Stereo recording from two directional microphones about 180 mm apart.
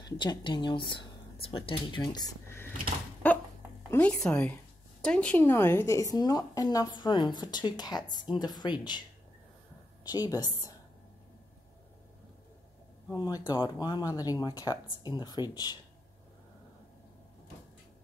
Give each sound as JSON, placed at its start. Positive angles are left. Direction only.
{"t": 0.0, "sound": "speech", "side_deg": 25}
{"t": 2.0, "sound": "speech", "side_deg": 20}
{"t": 3.2, "sound": "a sound", "side_deg": 10}
{"t": 3.9, "sound": "a woman's voice", "side_deg": 5}
{"t": 10.0, "sound": "a woman's voice", "side_deg": 20}
{"t": 13.2, "sound": "a woman's voice", "side_deg": 20}